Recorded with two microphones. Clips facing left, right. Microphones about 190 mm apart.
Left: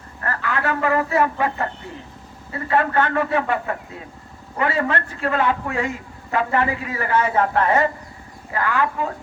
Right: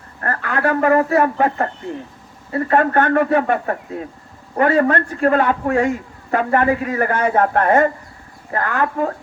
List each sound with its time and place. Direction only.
0.2 s a man's voice: 45° right (ahead or behind)